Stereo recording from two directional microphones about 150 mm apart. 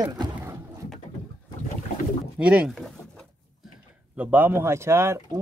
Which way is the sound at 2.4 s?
5° right (ahead or behind).